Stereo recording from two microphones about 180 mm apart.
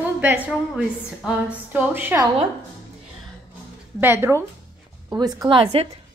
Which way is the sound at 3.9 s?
15° right (ahead or behind).